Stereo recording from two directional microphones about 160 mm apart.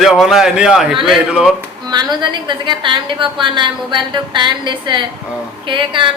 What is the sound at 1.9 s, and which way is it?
A woman's voice, 30° right (ahead or behind).